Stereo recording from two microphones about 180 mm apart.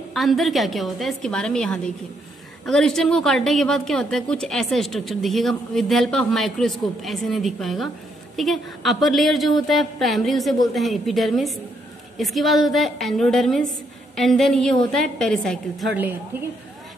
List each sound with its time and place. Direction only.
0.1 s a woman's voice: centre (ahead or behind)